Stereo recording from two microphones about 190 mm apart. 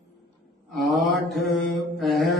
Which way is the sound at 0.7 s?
Centre (ahead or behind).